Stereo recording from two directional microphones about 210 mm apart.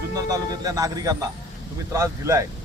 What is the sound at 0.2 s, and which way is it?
Speech, 15° right (ahead or behind).